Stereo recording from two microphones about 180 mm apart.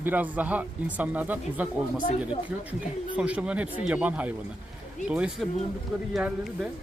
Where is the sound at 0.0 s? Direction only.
10° right (ahead or behind).